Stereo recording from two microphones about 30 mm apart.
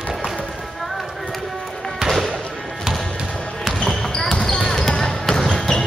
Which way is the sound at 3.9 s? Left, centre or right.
Centre.